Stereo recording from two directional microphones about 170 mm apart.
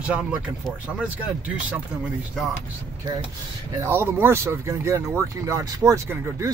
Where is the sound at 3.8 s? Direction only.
15° right (ahead or behind).